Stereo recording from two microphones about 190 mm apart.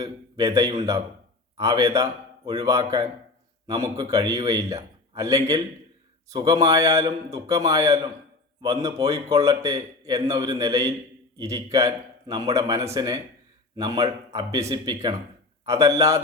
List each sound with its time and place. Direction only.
0.0 s a man's voice: 20° right (ahead or behind)